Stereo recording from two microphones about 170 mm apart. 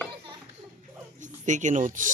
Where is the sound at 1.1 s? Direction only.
45° right (ahead or behind).